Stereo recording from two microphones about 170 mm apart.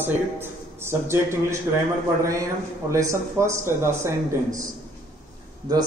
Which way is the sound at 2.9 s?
15° right (ahead or behind).